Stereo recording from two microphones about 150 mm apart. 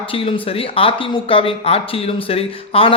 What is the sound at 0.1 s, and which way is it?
A man's voice, 35° left (ahead or behind).